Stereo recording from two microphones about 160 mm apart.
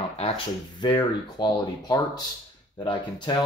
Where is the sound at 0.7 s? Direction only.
25° left (ahead or behind).